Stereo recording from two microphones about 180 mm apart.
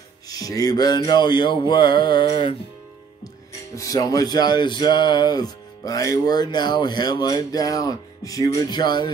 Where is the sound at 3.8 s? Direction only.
20° left (ahead or behind).